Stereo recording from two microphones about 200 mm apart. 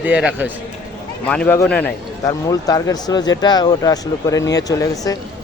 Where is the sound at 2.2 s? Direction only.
15° left (ahead or behind).